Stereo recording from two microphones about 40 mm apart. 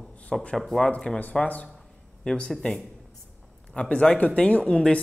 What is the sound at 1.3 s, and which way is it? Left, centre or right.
Speech, left.